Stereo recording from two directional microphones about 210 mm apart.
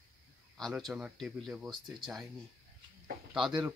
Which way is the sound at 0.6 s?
Centre (ahead or behind).